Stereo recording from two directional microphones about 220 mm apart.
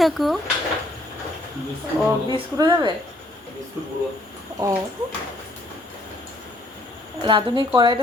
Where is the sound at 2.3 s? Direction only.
20° right (ahead or behind).